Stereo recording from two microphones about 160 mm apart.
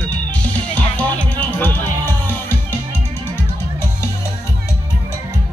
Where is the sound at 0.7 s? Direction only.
10° left (ahead or behind).